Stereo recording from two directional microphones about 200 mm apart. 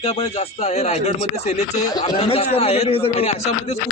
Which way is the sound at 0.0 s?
30° left (ahead or behind).